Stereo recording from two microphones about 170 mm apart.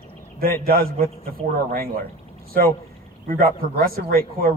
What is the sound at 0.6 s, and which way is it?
Speech, 60° right (ahead or behind).